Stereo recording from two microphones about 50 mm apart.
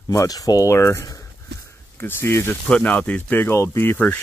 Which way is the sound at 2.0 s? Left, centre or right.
Left.